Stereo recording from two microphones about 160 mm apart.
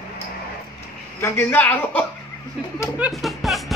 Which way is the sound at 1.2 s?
15° left (ahead or behind).